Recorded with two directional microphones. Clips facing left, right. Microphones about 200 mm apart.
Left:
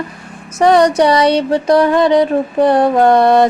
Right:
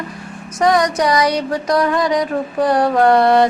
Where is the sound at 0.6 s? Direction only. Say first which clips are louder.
Left 5 dB; 30° left (ahead or behind).